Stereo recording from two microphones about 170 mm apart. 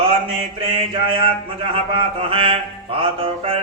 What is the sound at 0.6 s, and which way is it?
Mantra, 30° right (ahead or behind).